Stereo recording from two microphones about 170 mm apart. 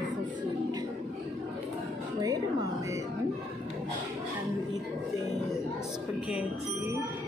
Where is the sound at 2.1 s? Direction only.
20° right (ahead or behind).